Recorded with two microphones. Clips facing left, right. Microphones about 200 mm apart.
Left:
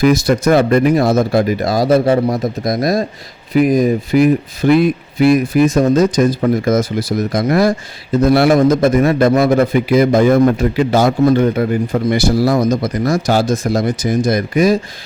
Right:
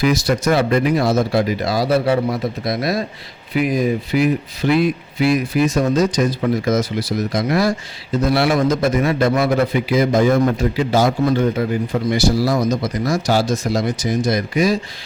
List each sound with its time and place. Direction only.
0.0 s speech: 50° left (ahead or behind)